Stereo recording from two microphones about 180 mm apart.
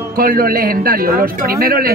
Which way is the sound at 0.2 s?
55° right (ahead or behind).